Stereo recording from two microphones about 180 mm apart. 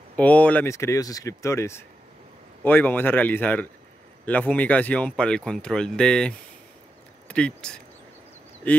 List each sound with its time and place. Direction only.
0.1 s speech: 10° left (ahead or behind)